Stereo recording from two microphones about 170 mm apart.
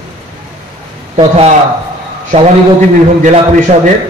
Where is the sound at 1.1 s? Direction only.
35° right (ahead or behind).